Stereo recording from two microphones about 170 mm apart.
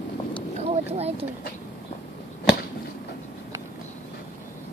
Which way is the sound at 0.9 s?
35° right (ahead or behind).